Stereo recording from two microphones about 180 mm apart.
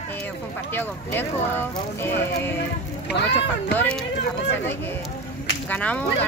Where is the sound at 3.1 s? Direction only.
65° left (ahead or behind).